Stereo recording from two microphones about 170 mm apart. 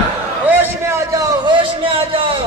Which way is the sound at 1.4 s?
30° right (ahead or behind).